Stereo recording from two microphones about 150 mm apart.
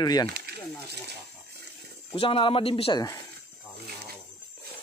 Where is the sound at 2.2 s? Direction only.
35° left (ahead or behind).